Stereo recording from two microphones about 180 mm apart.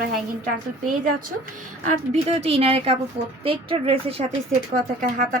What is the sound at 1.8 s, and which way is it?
A woman's voice, 35° right (ahead or behind).